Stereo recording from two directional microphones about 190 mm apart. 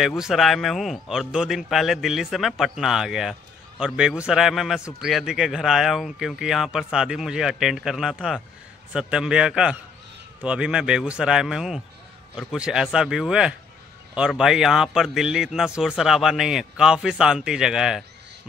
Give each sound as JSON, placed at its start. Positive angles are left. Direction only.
{"t": 0.0, "sound": "a man's voice", "side_deg": 0}